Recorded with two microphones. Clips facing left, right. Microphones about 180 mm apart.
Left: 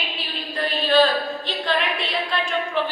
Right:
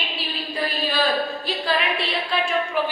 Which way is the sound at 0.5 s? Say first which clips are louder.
Left 6 dB; 10° right (ahead or behind).